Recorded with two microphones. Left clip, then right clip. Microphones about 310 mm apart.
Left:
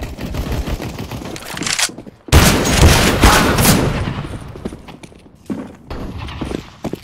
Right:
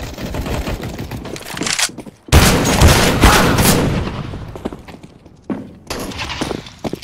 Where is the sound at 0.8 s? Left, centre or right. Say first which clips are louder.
Left 1 dB; centre.